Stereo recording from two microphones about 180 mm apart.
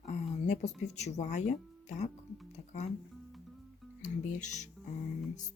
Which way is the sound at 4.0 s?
45° left (ahead or behind).